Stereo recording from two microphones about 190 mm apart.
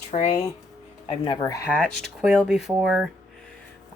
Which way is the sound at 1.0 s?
25° left (ahead or behind).